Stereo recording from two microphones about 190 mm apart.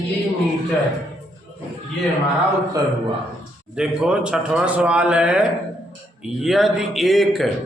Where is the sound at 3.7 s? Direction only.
5° right (ahead or behind).